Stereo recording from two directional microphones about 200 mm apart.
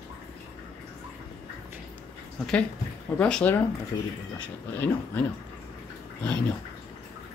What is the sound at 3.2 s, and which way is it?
Speech, 5° left (ahead or behind).